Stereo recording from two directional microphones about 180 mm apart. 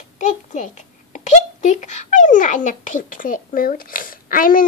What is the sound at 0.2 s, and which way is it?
A child's voice, 40° left (ahead or behind).